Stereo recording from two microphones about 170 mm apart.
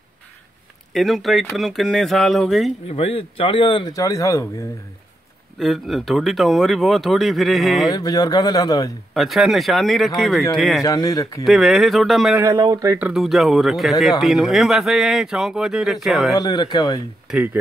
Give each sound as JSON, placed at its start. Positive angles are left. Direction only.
{"t": 0.9, "sound": "speech", "side_deg": 0}
{"t": 2.9, "sound": "speech", "side_deg": 35}
{"t": 5.6, "sound": "speech", "side_deg": 0}
{"t": 7.9, "sound": "speech", "side_deg": 20}
{"t": 9.1, "sound": "speech", "side_deg": 0}
{"t": 10.8, "sound": "speech", "side_deg": 20}
{"t": 11.4, "sound": "speech", "side_deg": 0}
{"t": 12.5, "sound": "speech", "side_deg": -20}
{"t": 13.0, "sound": "speech", "side_deg": 0}
{"t": 16.3, "sound": "speech", "side_deg": 25}
{"t": 17.3, "sound": "speech", "side_deg": -5}